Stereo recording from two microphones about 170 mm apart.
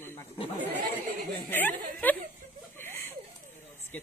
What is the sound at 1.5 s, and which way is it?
Speech, 10° left (ahead or behind).